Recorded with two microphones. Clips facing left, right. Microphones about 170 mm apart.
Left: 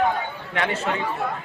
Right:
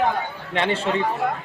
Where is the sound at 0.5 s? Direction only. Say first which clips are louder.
Right 3 dB; 30° right (ahead or behind).